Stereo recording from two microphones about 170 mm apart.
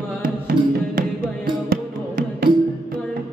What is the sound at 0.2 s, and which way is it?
Music, 60° right (ahead or behind).